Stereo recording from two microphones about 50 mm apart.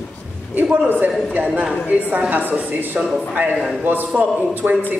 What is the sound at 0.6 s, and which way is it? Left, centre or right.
A woman's voice, right.